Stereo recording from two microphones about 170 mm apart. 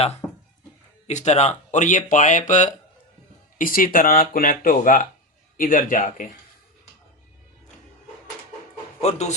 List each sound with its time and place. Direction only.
0.2 s a sound: 5° left (ahead or behind)
1.0 s speech: 40° left (ahead or behind)
9.0 s speech: 40° left (ahead or behind)